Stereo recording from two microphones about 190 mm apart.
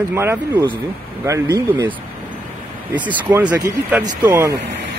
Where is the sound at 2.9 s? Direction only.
25° right (ahead or behind).